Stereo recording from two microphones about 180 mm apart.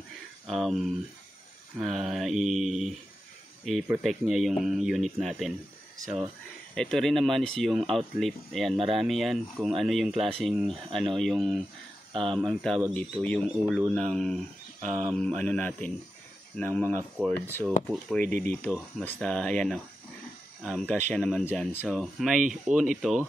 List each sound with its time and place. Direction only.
0.5 s speech: centre (ahead or behind)
6.7 s speech: 5° left (ahead or behind)
18.2 s speech: 45° right (ahead or behind)
18.5 s speech: 5° left (ahead or behind)